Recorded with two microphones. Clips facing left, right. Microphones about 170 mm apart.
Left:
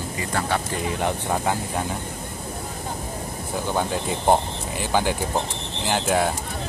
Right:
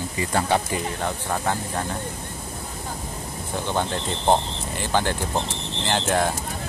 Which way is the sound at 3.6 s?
10° left (ahead or behind).